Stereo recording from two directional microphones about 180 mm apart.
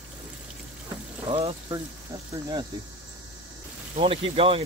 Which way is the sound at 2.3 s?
20° right (ahead or behind).